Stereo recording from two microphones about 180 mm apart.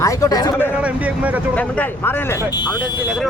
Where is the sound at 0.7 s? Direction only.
5° right (ahead or behind).